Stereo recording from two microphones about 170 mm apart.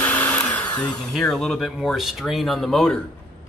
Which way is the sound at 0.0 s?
10° left (ahead or behind).